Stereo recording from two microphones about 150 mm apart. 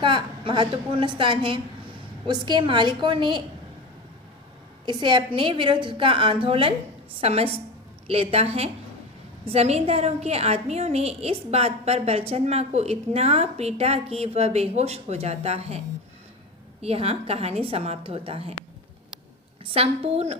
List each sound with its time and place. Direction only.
0.0 s a woman's voice: 30° right (ahead or behind)
4.9 s a woman's voice: 30° right (ahead or behind)
16.8 s a woman's voice: 40° right (ahead or behind)
19.7 s a woman's voice: 40° right (ahead or behind)